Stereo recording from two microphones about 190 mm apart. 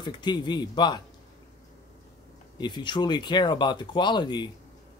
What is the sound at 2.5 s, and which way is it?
Speech, 25° left (ahead or behind).